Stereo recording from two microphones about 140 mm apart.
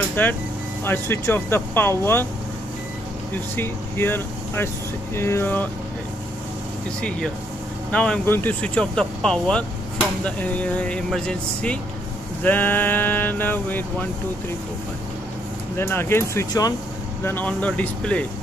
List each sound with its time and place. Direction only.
0.1 s speech: 10° left (ahead or behind)
3.5 s speech: 15° left (ahead or behind)
7.0 s speech: 5° left (ahead or behind)
15.8 s speech: 15° left (ahead or behind)